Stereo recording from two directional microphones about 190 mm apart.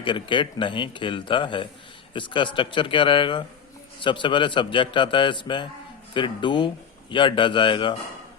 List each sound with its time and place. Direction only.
0.0 s speech: 25° left (ahead or behind)